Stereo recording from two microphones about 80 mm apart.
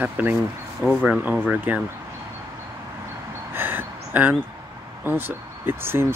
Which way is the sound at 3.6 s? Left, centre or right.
Right.